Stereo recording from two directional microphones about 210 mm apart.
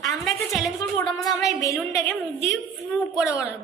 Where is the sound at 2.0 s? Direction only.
15° left (ahead or behind).